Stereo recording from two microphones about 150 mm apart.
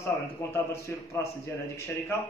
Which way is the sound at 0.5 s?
15° left (ahead or behind).